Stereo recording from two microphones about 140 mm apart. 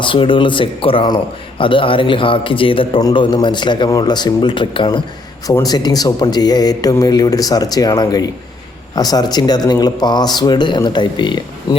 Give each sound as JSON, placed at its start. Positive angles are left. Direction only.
{"t": 0.0, "sound": "a man's voice", "side_deg": 35}